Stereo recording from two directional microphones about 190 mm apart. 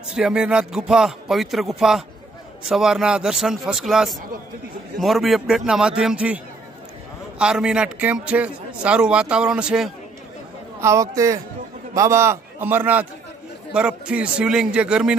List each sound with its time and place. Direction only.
0.1 s a man's voice: 5° right (ahead or behind)
10.8 s a man's voice: 15° right (ahead or behind)